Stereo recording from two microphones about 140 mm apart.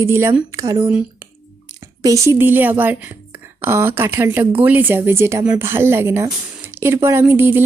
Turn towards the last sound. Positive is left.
turn(degrees=-15)  # may be behind; listen again after turning